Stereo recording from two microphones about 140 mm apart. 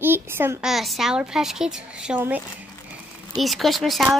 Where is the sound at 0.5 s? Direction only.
Centre (ahead or behind).